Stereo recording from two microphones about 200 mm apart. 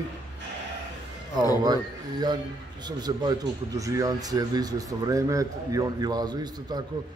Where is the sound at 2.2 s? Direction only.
20° right (ahead or behind).